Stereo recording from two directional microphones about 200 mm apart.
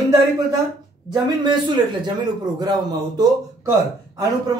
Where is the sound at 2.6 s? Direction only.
20° right (ahead or behind).